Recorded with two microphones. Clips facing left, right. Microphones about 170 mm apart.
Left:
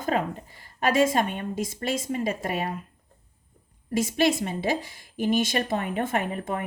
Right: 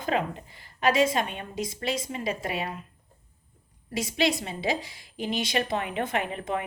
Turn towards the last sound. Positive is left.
turn(degrees=45)  # may be behind; listen again after turning